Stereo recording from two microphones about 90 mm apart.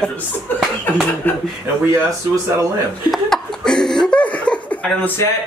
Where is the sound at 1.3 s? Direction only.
20° left (ahead or behind).